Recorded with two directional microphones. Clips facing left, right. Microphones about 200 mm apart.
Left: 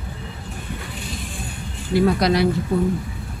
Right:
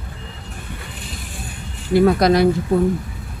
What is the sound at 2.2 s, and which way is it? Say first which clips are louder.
Speech: right 4 dB; 45° right (ahead or behind).